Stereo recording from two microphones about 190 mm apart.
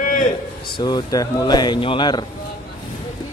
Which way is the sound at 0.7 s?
20° left (ahead or behind).